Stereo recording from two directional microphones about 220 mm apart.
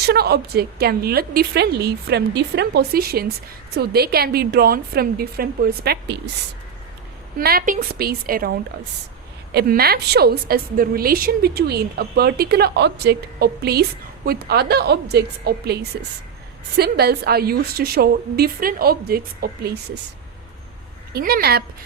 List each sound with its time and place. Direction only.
0.0 s a woman's voice: 45° right (ahead or behind)
7.3 s a woman's voice: 40° right (ahead or behind)
9.5 s a woman's voice: 45° right (ahead or behind)
21.1 s a woman's voice: 45° right (ahead or behind)